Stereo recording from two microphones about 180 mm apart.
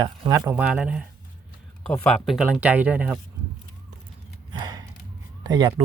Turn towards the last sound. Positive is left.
turn(degrees=-20)  # may be behind; listen again after turning